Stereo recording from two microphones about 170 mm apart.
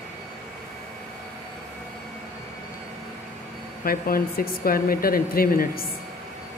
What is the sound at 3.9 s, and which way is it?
Speech, 60° left (ahead or behind).